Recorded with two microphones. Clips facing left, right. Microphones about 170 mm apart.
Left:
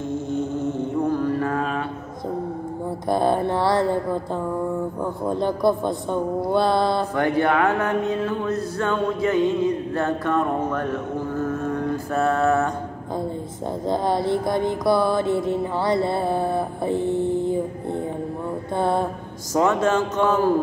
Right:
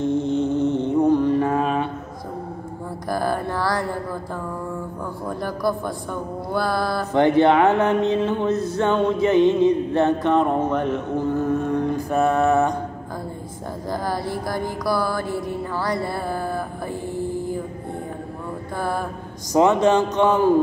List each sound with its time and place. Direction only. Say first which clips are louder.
0.0 s mantra: right 5 dB; 20° right (ahead or behind)
3.1 s music: left 4 dB; 25° left (ahead or behind)
7.2 s speech: right 7 dB; 25° right (ahead or behind)
12.1 s a sound: right 1 dB; 15° right (ahead or behind)
13.8 s music: left 4 dB; 25° left (ahead or behind)
18.8 s music: left 4 dB; 25° left (ahead or behind)
19.5 s a sound: right 3 dB; 15° right (ahead or behind)